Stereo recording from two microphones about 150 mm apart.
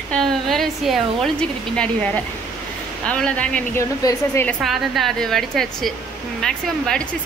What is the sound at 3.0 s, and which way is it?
Speech, 5° left (ahead or behind).